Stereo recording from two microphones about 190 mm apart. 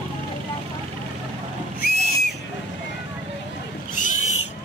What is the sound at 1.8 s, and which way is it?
Neigh, 55° left (ahead or behind).